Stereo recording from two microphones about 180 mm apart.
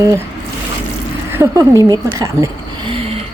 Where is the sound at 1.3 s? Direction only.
15° right (ahead or behind).